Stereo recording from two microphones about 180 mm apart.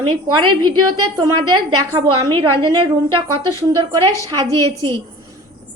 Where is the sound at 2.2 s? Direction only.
25° right (ahead or behind).